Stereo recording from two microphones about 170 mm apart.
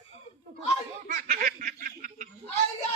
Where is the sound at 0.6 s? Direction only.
50° right (ahead or behind).